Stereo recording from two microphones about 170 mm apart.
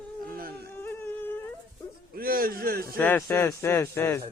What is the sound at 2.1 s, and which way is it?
Speech, 60° right (ahead or behind).